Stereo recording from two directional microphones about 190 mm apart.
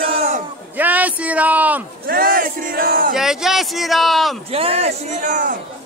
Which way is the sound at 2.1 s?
50° right (ahead or behind).